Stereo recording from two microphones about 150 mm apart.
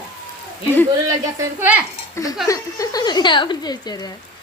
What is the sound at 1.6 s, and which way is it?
Speech, 10° right (ahead or behind).